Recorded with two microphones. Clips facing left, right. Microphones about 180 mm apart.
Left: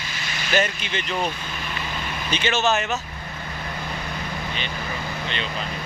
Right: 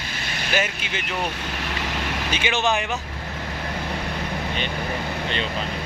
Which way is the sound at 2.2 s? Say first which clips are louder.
Left 2 dB; 10° right (ahead or behind).